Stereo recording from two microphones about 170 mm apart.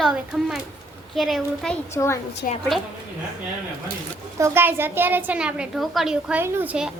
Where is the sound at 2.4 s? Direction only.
55° left (ahead or behind).